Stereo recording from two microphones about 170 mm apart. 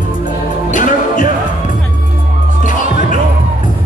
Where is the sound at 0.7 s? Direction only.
50° left (ahead or behind).